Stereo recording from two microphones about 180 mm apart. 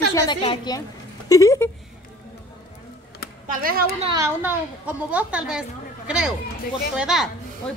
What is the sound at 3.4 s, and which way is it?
Speech, 50° right (ahead or behind).